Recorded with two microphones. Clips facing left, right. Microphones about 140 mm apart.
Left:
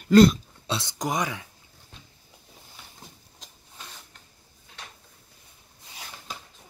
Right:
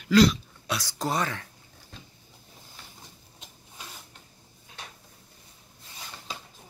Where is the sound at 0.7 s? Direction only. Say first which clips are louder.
Left 1 dB; 25° left (ahead or behind).